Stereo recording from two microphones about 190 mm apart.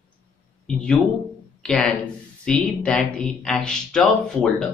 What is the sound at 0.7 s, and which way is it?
Speech, 5° left (ahead or behind).